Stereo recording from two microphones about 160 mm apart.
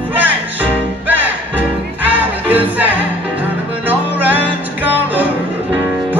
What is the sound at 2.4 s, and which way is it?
Music, 10° right (ahead or behind).